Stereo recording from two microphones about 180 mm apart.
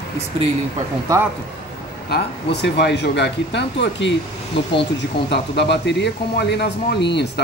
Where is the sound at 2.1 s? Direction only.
70° left (ahead or behind).